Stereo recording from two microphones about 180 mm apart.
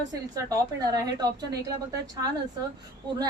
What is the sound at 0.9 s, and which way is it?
Speech, 20° right (ahead or behind).